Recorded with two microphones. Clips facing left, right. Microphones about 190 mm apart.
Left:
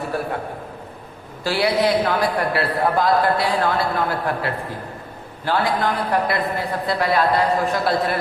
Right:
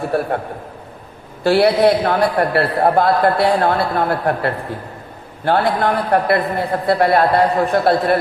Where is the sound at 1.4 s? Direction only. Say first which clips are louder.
Right 7 dB; 60° right (ahead or behind).